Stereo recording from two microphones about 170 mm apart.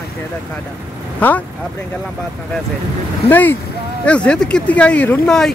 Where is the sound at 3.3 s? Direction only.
10° left (ahead or behind).